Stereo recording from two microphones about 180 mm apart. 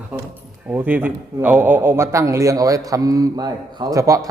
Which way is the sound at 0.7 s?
10° right (ahead or behind).